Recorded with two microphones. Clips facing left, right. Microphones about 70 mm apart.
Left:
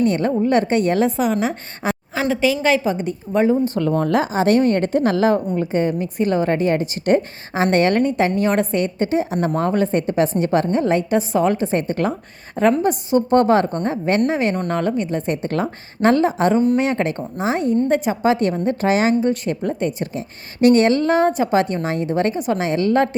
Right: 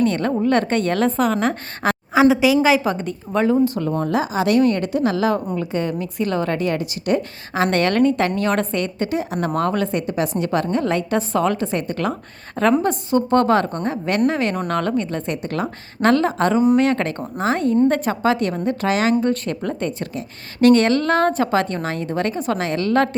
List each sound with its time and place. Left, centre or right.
0.0 s a woman's voice: centre
3.0 s a woman's voice: centre
4.0 s speech: left
4.3 s a woman's voice: left
9.9 s a woman's voice: left
12.5 s a woman's voice: centre
18.6 s a woman's voice: left